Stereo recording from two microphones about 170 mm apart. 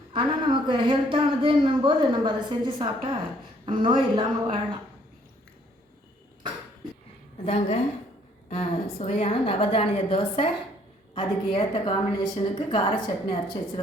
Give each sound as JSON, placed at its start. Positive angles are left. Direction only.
{"t": 0.1, "sound": "speech", "side_deg": -30}
{"t": 7.4, "sound": "a woman's voice", "side_deg": 35}
{"t": 9.0, "sound": "a woman's voice", "side_deg": 35}